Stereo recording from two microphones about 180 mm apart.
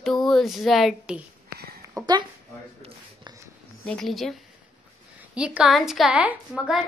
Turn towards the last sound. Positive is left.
turn(degrees=-5)  # may be behind; listen again after turning